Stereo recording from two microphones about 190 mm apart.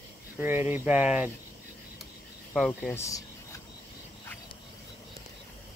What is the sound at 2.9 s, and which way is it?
Speech, 15° left (ahead or behind).